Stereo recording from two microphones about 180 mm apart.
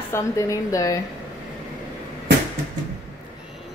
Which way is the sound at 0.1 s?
15° left (ahead or behind).